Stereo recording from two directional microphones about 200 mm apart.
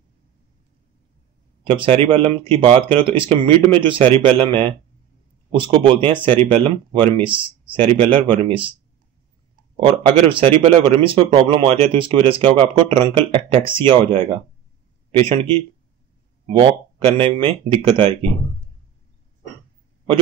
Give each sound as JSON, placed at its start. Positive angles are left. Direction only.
{"t": 1.7, "sound": "speech", "side_deg": -25}
{"t": 9.8, "sound": "speech", "side_deg": -25}